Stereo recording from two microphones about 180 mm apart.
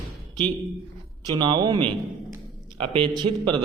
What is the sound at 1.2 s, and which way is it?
A man's voice, 25° right (ahead or behind).